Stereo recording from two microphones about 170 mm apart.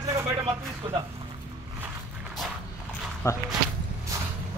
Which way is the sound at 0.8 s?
25° right (ahead or behind).